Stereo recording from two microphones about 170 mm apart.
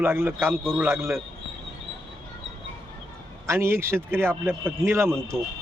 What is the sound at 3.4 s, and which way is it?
Speech, 15° right (ahead or behind).